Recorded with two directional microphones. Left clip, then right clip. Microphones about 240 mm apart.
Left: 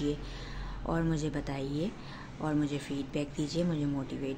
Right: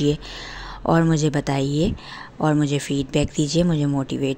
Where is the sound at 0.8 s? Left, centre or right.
Right.